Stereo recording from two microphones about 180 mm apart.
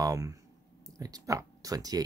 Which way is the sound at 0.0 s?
20° right (ahead or behind).